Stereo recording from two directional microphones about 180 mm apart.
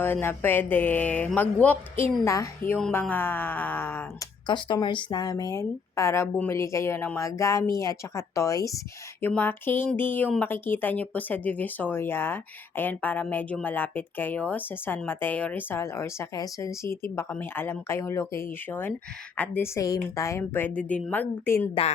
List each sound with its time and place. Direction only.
0.0 s speech: 10° left (ahead or behind)
4.4 s speech: 25° left (ahead or behind)